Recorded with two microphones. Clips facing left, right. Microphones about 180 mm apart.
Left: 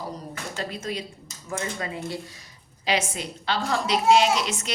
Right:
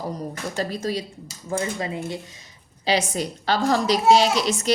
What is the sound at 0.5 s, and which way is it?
A woman's voice, 35° right (ahead or behind).